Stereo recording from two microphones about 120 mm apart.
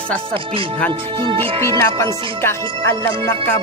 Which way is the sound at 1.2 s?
45° right (ahead or behind).